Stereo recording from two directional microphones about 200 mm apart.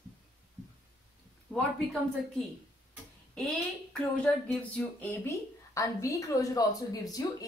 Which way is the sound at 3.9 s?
5° left (ahead or behind).